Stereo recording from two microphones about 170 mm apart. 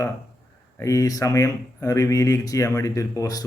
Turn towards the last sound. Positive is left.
turn(degrees=20)  # may be behind; listen again after turning